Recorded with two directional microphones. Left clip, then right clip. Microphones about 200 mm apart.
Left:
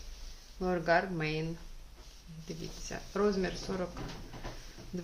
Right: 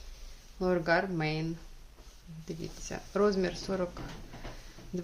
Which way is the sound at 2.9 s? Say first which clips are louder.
Right 3 dB; 50° right (ahead or behind).